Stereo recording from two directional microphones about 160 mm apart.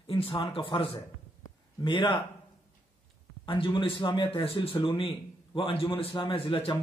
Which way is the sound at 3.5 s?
30° left (ahead or behind).